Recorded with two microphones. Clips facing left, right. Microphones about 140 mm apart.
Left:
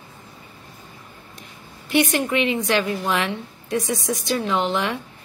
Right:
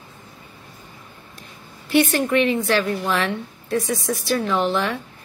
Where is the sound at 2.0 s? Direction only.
15° left (ahead or behind).